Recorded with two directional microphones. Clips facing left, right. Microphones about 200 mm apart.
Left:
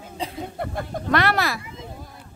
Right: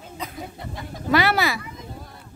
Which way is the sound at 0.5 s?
55° left (ahead or behind).